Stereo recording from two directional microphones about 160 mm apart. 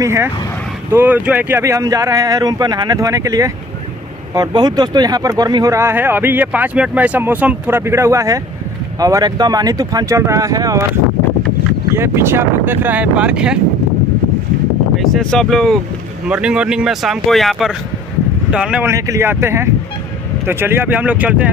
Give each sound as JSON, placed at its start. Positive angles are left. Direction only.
{"t": 0.0, "sound": "speech", "side_deg": -15}
{"t": 11.9, "sound": "speech", "side_deg": -15}
{"t": 15.0, "sound": "speech", "side_deg": 0}
{"t": 18.9, "sound": "speech", "side_deg": -20}